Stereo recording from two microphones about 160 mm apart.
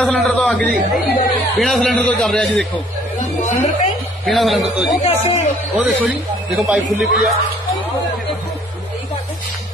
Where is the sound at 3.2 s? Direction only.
50° left (ahead or behind).